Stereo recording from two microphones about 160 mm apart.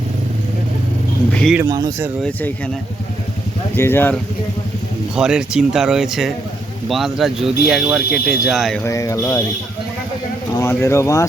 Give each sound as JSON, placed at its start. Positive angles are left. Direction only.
{"t": 1.3, "sound": "speech", "side_deg": 5}
{"t": 1.6, "sound": "speech", "side_deg": -20}
{"t": 3.8, "sound": "speech", "side_deg": 15}
{"t": 5.1, "sound": "speech", "side_deg": -5}
{"t": 8.8, "sound": "speech", "side_deg": 20}
{"t": 10.5, "sound": "speech", "side_deg": 20}